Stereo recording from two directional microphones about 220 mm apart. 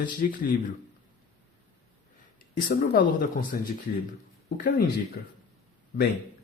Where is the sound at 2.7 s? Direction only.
40° left (ahead or behind).